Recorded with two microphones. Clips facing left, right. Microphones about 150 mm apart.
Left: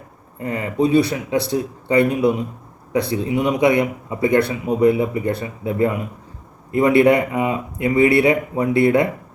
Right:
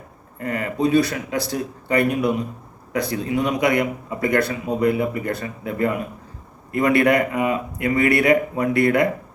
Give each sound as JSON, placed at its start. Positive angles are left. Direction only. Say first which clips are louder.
{"t": 0.3, "sound": "speech", "louder": "left 3 dB", "side_deg": 20}
{"t": 3.2, "sound": "speech", "louder": "left 2 dB", "side_deg": 10}
{"t": 3.6, "sound": "speech", "louder": "left 3 dB", "side_deg": 25}